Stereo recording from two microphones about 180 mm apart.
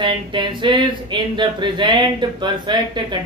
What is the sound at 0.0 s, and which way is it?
Speech, 25° right (ahead or behind).